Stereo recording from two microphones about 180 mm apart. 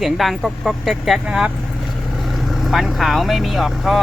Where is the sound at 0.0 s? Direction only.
Centre (ahead or behind).